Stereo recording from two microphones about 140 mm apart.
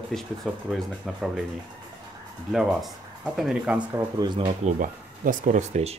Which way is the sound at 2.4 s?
Centre (ahead or behind).